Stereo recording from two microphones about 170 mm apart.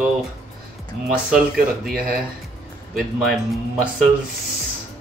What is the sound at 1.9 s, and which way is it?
Speech, 55° right (ahead or behind).